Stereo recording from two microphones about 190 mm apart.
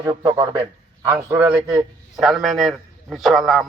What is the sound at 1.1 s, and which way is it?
A man's voice, 10° right (ahead or behind).